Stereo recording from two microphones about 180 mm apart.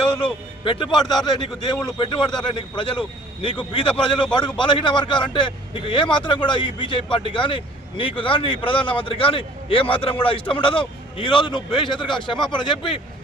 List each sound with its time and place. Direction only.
0.2 s a man's voice: 30° left (ahead or behind)